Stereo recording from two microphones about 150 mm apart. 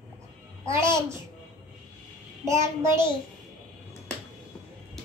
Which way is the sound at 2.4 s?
20° right (ahead or behind).